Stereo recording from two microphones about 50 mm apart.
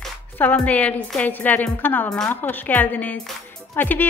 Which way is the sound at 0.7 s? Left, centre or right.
Left.